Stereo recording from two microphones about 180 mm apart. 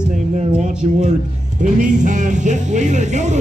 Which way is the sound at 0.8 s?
40° right (ahead or behind).